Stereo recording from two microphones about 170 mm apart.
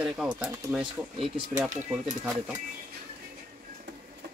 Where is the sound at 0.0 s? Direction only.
5° right (ahead or behind).